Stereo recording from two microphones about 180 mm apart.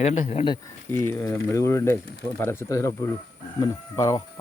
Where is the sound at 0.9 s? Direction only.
15° left (ahead or behind).